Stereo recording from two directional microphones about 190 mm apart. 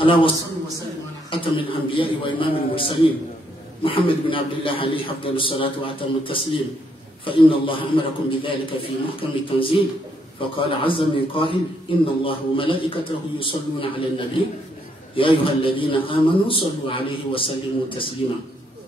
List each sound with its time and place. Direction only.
0.0 s a man's voice: 25° left (ahead or behind)
1.4 s a man's voice: 30° left (ahead or behind)